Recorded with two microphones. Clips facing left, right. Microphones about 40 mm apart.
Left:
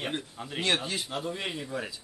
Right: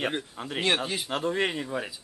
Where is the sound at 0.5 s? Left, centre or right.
Right.